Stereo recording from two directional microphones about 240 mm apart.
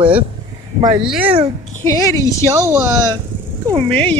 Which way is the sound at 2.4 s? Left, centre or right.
Centre.